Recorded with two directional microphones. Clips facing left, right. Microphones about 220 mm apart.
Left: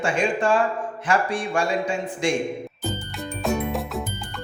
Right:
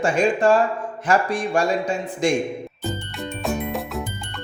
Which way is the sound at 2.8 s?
Centre (ahead or behind).